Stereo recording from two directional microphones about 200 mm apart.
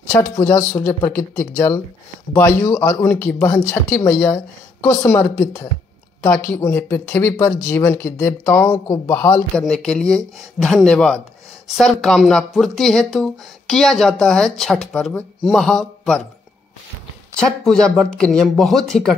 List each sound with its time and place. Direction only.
0.7 s speech: 10° left (ahead or behind)
17.6 s speech: 5° left (ahead or behind)